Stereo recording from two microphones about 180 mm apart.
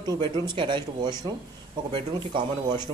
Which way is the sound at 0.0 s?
25° right (ahead or behind).